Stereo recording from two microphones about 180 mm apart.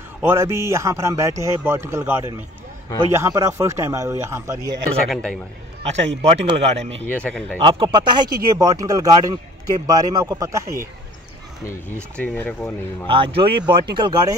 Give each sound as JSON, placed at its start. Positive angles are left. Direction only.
{"t": 0.2, "sound": "a man's voice", "side_deg": -15}
{"t": 5.1, "sound": "a man's voice", "side_deg": 5}
{"t": 5.9, "sound": "speech", "side_deg": -35}
{"t": 7.0, "sound": "speech", "side_deg": 10}
{"t": 7.6, "sound": "speech", "side_deg": -30}
{"t": 11.6, "sound": "speech", "side_deg": 15}
{"t": 13.1, "sound": "speech", "side_deg": -30}